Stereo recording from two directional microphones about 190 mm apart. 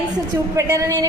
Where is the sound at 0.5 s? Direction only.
15° right (ahead or behind).